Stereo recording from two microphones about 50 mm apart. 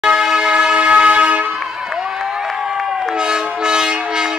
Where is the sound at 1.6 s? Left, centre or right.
Centre.